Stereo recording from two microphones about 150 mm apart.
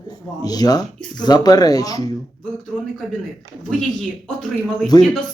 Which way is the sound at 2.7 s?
5° left (ahead or behind).